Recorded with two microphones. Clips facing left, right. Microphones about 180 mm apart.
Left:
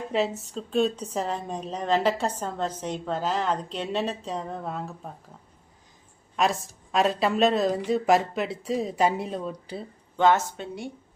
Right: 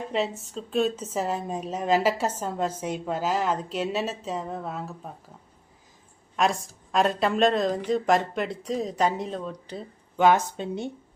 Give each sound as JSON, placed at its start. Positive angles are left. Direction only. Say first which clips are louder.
{"t": 0.1, "sound": "a woman's voice", "louder": "left 3 dB", "side_deg": 0}
{"t": 6.3, "sound": "a woman's voice", "louder": "even", "side_deg": 0}
{"t": 10.2, "sound": "speech", "louder": "right 1 dB", "side_deg": -15}